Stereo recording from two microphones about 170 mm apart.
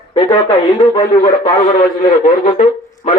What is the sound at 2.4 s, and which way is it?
Speech, 45° left (ahead or behind).